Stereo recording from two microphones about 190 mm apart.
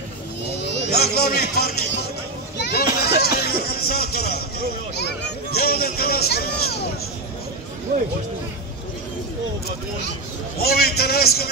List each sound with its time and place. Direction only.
0.6 s speech: 60° left (ahead or behind)
10.6 s a man's voice: 55° left (ahead or behind)